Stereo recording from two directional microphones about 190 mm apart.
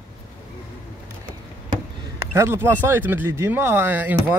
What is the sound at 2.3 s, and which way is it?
Speech, 15° right (ahead or behind).